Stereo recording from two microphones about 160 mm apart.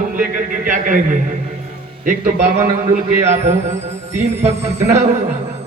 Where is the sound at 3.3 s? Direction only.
45° right (ahead or behind).